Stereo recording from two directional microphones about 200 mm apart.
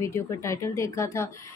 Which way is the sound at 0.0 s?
15° left (ahead or behind).